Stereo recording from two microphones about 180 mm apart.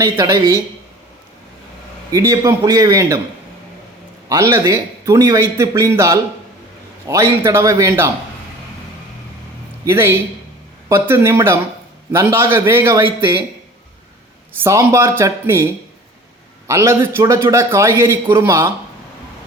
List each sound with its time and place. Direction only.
0.0 s a man's voice: 15° right (ahead or behind)
2.1 s a man's voice: 15° right (ahead or behind)
4.3 s a man's voice: 15° right (ahead or behind)
9.8 s a man's voice: 15° right (ahead or behind)
14.6 s a man's voice: 15° right (ahead or behind)